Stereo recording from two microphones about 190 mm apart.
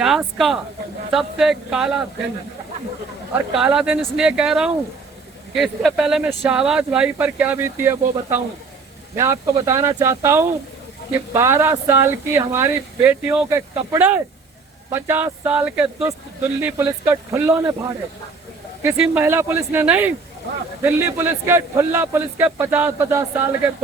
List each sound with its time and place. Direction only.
0.0 s speech: centre (ahead or behind)
3.3 s a man's voice: 5° right (ahead or behind)
18.8 s a man's voice: 10° right (ahead or behind)